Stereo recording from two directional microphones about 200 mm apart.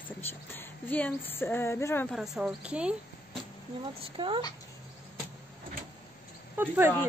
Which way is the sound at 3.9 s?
25° right (ahead or behind).